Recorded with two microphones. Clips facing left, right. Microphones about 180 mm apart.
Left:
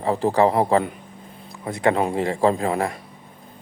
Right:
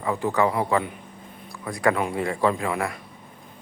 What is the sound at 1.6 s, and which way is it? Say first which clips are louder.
Speech: left 3 dB; 25° left (ahead or behind).